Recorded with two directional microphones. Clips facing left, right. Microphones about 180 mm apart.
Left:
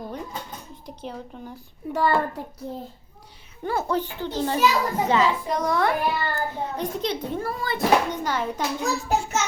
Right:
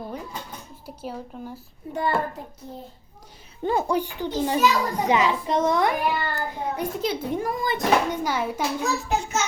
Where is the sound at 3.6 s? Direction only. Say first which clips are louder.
Right 2 dB; 15° right (ahead or behind).